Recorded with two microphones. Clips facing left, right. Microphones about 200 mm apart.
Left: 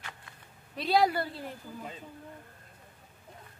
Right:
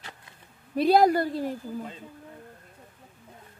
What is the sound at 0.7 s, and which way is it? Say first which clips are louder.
Speech: right 7 dB; 50° right (ahead or behind).